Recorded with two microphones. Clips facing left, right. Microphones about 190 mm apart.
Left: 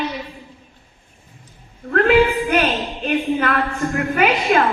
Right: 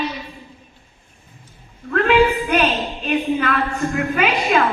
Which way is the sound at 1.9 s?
50° left (ahead or behind).